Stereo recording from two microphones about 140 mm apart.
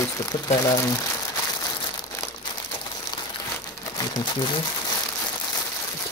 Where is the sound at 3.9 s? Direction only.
30° left (ahead or behind).